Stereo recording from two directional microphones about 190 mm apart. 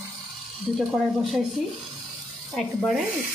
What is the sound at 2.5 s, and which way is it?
Speech, centre (ahead or behind).